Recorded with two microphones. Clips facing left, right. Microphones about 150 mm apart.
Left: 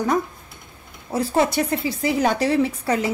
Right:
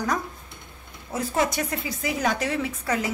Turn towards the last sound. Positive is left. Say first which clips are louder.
# left 5 dB
turn(degrees=30)  # may be behind; listen again after turning